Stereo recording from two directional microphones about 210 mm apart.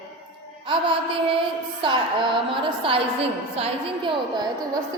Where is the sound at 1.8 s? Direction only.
25° right (ahead or behind).